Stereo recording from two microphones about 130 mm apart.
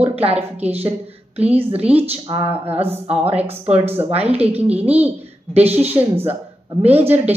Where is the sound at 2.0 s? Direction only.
45° right (ahead or behind).